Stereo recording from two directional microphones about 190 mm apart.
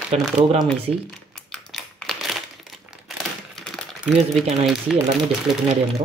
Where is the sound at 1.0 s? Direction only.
5° left (ahead or behind).